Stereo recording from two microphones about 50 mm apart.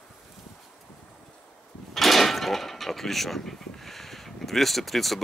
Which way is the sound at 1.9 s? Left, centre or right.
Centre.